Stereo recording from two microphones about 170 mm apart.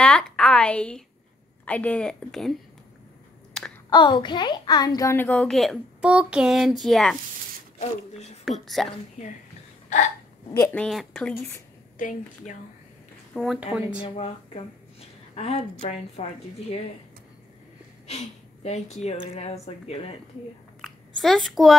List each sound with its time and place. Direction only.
0.0 s a sound: 5° left (ahead or behind)
1.7 s a woman's voice: 10° left (ahead or behind)
3.6 s a sound: 5° left (ahead or behind)
3.9 s a child's voice: 25° left (ahead or behind); by 7.2 s centre (ahead or behind)
7.8 s speech: 40° left (ahead or behind)
8.5 s a woman's voice: centre (ahead or behind)
10.5 s a child's voice: 10° left (ahead or behind)
12.0 s a woman's voice: 50° left (ahead or behind)
13.3 s speech: 5° left (ahead or behind)
14.1 s a woman's voice: 35° left (ahead or behind)
18.0 s speech: 40° left (ahead or behind)
20.8 s a child's voice: centre (ahead or behind)